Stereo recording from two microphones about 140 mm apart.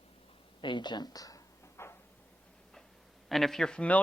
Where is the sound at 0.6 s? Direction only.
30° left (ahead or behind).